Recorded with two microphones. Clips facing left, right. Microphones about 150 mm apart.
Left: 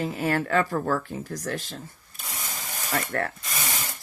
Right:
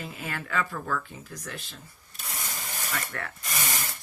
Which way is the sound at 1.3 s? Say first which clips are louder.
Left 6 dB; 50° left (ahead or behind).